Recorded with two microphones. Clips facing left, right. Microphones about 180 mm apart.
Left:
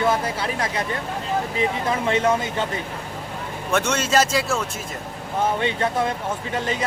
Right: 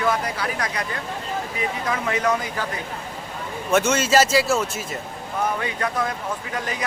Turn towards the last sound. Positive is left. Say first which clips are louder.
# left 3 dB
turn(degrees=25)  # may be behind; listen again after turning